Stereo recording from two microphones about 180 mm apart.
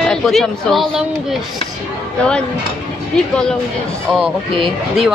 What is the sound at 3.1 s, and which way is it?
Speech, 5° left (ahead or behind).